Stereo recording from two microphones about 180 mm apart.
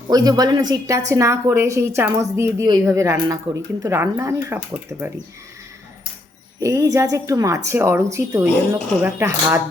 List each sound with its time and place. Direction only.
0.1 s speech: 20° right (ahead or behind)
6.6 s speech: 15° right (ahead or behind)